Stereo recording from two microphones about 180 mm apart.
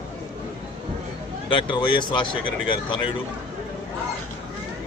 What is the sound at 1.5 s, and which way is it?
Speech, 25° left (ahead or behind).